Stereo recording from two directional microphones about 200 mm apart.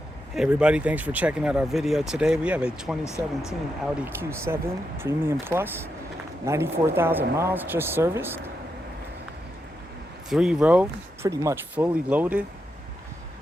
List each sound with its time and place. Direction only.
0.3 s speech: 5° right (ahead or behind)
3.0 s speech: 15° left (ahead or behind)
3.9 s speech: 10° right (ahead or behind)
10.2 s speech: 5° right (ahead or behind)